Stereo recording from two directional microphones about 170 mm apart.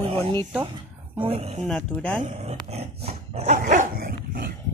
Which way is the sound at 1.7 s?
10° left (ahead or behind).